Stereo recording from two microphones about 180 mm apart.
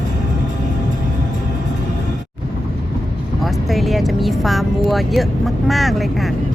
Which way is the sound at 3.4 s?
Centre (ahead or behind).